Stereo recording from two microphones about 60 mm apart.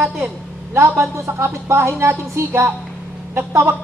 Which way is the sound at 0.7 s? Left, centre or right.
Right.